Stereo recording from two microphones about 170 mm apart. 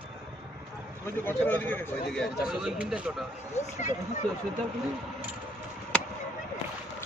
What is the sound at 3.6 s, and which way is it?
Speech, 40° left (ahead or behind).